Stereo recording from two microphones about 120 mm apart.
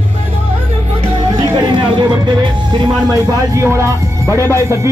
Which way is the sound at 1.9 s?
40° right (ahead or behind).